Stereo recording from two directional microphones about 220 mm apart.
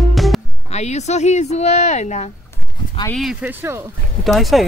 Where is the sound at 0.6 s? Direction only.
30° left (ahead or behind).